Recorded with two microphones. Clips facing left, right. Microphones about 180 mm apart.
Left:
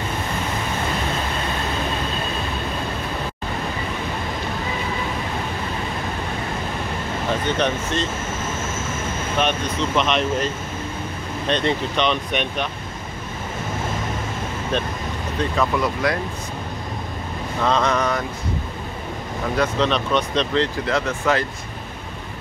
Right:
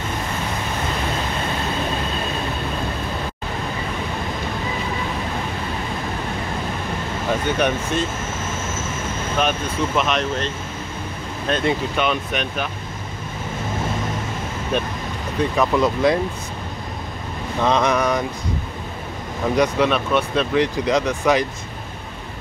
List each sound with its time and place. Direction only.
7.4 s speech: 10° right (ahead or behind)
9.4 s speech: centre (ahead or behind)
11.4 s speech: 5° right (ahead or behind)
15.5 s speech: 20° right (ahead or behind)
17.6 s speech: 15° right (ahead or behind)
19.5 s speech: 15° right (ahead or behind)